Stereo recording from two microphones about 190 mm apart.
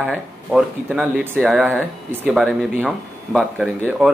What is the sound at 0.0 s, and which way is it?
Speech, centre (ahead or behind).